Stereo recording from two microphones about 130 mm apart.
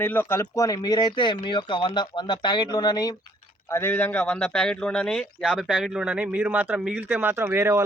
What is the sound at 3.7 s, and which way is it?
Speech, 20° left (ahead or behind).